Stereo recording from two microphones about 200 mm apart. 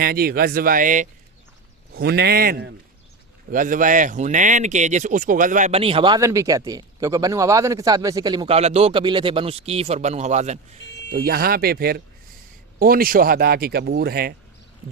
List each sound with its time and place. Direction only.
0.0 s speech: 50° right (ahead or behind)
2.0 s speech: 50° right (ahead or behind); by 10.6 s 35° right (ahead or behind)
11.1 s speech: 50° right (ahead or behind)